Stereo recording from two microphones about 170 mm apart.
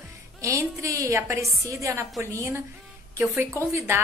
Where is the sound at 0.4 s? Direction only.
20° right (ahead or behind).